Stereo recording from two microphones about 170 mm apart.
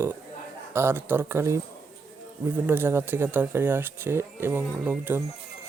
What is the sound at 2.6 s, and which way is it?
Speech, 10° right (ahead or behind).